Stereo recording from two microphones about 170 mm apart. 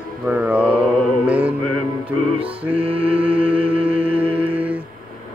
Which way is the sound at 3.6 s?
30° right (ahead or behind).